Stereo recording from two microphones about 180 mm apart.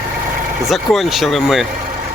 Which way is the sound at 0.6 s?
Centre (ahead or behind).